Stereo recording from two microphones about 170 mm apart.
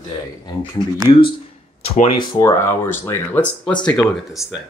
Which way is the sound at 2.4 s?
15° left (ahead or behind).